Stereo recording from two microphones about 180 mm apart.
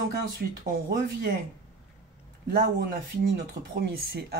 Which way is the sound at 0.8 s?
55° right (ahead or behind).